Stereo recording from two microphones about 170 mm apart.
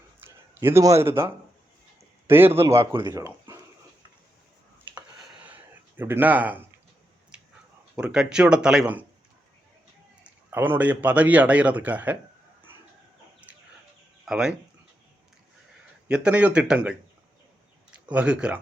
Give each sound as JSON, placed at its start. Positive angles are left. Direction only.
{"t": 0.3, "sound": "a man's voice", "side_deg": -15}
{"t": 6.0, "sound": "a man's voice", "side_deg": -10}
{"t": 7.9, "sound": "speech", "side_deg": -5}
{"t": 10.2, "sound": "a man's voice", "side_deg": -10}
{"t": 13.5, "sound": "chicken", "side_deg": -10}
{"t": 14.3, "sound": "speech", "side_deg": -5}
{"t": 16.0, "sound": "a man's voice", "side_deg": -5}
{"t": 17.9, "sound": "speech", "side_deg": -5}